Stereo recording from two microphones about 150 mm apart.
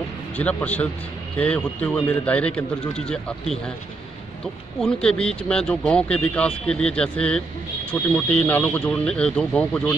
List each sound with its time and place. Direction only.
0.4 s speech: 10° left (ahead or behind)
4.7 s speech: 5° left (ahead or behind)